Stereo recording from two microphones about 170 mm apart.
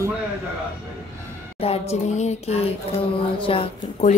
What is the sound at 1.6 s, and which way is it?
Speech, 35° left (ahead or behind).